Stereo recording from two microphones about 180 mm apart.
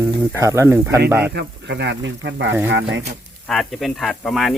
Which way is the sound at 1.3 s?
65° right (ahead or behind).